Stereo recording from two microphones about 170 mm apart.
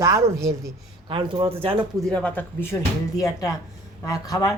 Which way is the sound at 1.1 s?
30° right (ahead or behind).